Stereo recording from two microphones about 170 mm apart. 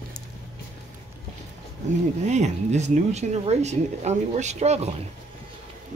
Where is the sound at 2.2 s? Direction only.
45° right (ahead or behind).